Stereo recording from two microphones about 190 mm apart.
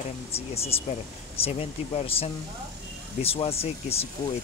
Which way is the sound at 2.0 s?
30° left (ahead or behind).